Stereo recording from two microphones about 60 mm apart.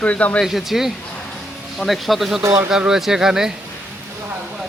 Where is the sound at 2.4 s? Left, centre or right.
Right.